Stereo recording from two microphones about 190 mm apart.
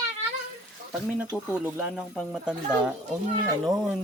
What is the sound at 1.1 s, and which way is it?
Speech, 5° right (ahead or behind).